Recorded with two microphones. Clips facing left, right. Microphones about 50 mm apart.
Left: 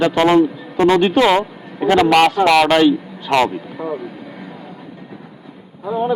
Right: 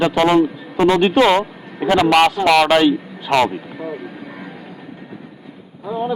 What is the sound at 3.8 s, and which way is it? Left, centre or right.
Vehicle, left.